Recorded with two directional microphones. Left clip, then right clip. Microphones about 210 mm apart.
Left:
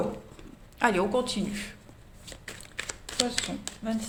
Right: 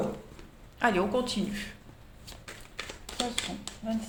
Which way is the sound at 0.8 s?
20° left (ahead or behind).